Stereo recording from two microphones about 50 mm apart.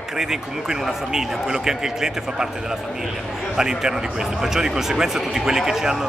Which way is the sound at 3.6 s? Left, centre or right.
Centre.